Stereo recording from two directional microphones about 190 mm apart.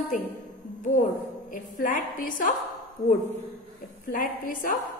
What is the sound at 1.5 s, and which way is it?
A woman's voice, 45° left (ahead or behind).